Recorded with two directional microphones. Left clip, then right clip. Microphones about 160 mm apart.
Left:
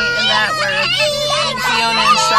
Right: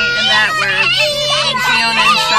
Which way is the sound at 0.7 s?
5° left (ahead or behind).